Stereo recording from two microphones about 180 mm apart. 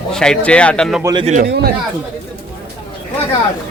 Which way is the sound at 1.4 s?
65° right (ahead or behind).